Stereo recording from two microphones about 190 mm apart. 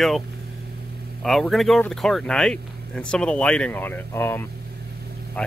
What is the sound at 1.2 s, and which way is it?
Speech, centre (ahead or behind).